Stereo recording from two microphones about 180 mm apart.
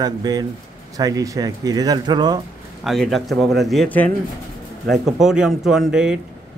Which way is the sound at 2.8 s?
Centre (ahead or behind).